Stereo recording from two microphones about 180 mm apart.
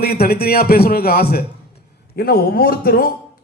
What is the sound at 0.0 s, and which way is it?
A man's voice, 60° left (ahead or behind).